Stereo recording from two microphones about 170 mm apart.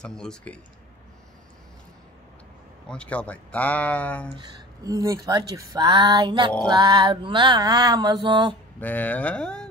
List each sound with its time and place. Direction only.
0.0 s speech: 5° left (ahead or behind)
2.9 s speech: 5° left (ahead or behind)
4.8 s mantra: 20° right (ahead or behind)
8.7 s speech: 10° left (ahead or behind)